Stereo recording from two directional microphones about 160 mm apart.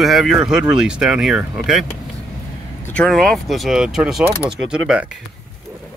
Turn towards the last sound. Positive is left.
turn(degrees=-5)  # may be behind; listen again after turning